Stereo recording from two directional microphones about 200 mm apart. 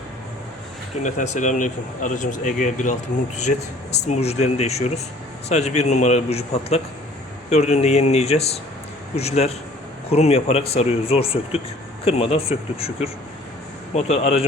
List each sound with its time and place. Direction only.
1.0 s speech: 35° left (ahead or behind)
4.0 s speech: 35° left (ahead or behind)